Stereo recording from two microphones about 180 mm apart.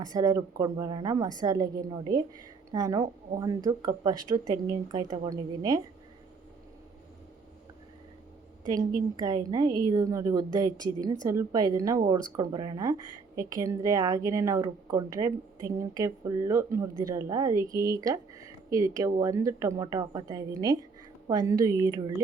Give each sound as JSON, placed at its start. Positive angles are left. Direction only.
{"t": 0.0, "sound": "a woman's voice", "side_deg": -20}
{"t": 2.7, "sound": "a woman's voice", "side_deg": -20}
{"t": 8.6, "sound": "a woman's voice", "side_deg": -20}